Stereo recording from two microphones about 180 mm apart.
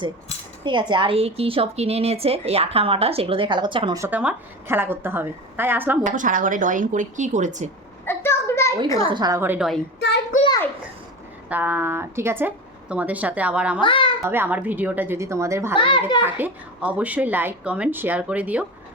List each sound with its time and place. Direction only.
0.6 s a woman's voice: 25° right (ahead or behind)
4.0 s a woman's voice: 10° right (ahead or behind)
6.1 s a woman's voice: 45° right (ahead or behind)
8.0 s a sound: 15° left (ahead or behind)
9.0 s a woman's voice: 25° right (ahead or behind); by 9.6 s 10° right (ahead or behind)
10.3 s a sound: 45° left (ahead or behind)
11.4 s a woman's voice: 10° right (ahead or behind)
13.8 s a child's voice: 25° left (ahead or behind)
14.3 s a woman's voice: 10° right (ahead or behind)
15.7 s a child's voice: 30° left (ahead or behind)
16.2 s a woman's voice: 10° right (ahead or behind)